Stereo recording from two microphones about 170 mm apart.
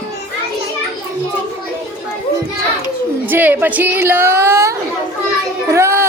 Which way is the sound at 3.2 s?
10° right (ahead or behind).